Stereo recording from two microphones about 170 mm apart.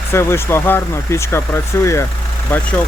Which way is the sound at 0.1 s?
15° left (ahead or behind).